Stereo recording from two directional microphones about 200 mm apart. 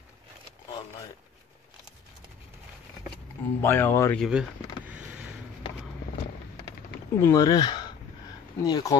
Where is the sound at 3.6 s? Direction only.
10° left (ahead or behind).